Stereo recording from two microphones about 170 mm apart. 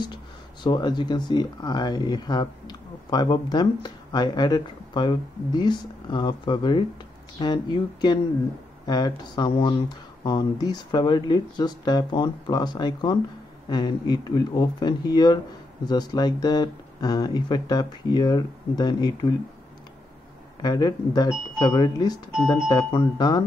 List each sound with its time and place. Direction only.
0.7 s speech: 25° left (ahead or behind)
20.6 s speech: 25° left (ahead or behind)